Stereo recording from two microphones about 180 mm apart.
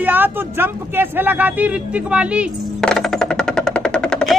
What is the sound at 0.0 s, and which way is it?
Speech, 10° right (ahead or behind).